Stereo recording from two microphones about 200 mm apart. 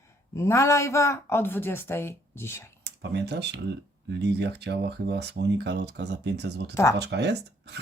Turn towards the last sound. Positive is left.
turn(degrees=-55)  # may be behind; listen again after turning